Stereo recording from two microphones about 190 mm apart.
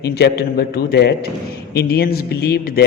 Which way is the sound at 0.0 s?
60° left (ahead or behind).